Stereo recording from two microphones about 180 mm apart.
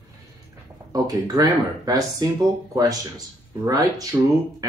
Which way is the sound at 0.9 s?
20° right (ahead or behind).